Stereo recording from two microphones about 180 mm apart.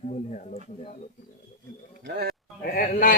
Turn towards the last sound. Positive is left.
turn(degrees=55)  # may be behind; listen again after turning